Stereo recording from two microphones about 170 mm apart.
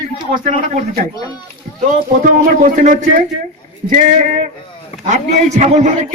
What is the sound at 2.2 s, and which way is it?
A man's voice, 50° right (ahead or behind).